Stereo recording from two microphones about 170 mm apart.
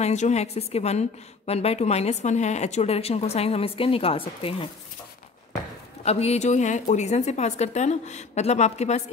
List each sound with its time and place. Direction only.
0.0 s a woman's voice: 40° left (ahead or behind)
6.0 s a woman's voice: 40° left (ahead or behind)